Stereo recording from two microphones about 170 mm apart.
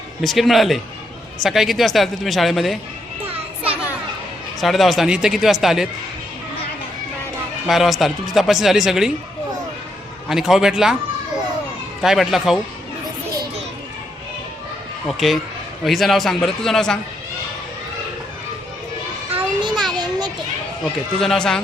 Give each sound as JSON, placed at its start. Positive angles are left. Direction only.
{"t": 0.2, "sound": "speech", "side_deg": 0}
{"t": 4.6, "sound": "speech", "side_deg": 0}
{"t": 7.7, "sound": "speech", "side_deg": 0}
{"t": 10.2, "sound": "speech", "side_deg": 0}
{"t": 12.0, "sound": "speech", "side_deg": 0}
{"t": 15.0, "sound": "speech", "side_deg": 0}
{"t": 19.3, "sound": "children playing", "side_deg": -25}
{"t": 21.2, "sound": "speech", "side_deg": 5}